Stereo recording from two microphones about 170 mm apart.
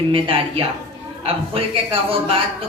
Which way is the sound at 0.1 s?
35° right (ahead or behind).